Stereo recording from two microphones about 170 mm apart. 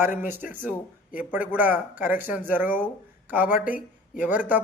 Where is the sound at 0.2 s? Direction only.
10° right (ahead or behind).